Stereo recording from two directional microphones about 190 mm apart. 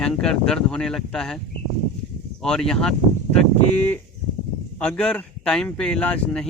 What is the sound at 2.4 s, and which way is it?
Speech, 5° left (ahead or behind).